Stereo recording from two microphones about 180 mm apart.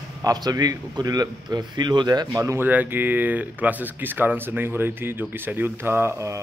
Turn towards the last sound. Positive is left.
turn(degrees=-15)  # may be behind; listen again after turning